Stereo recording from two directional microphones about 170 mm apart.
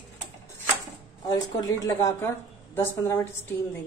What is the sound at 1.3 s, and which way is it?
A woman's voice, 20° left (ahead or behind).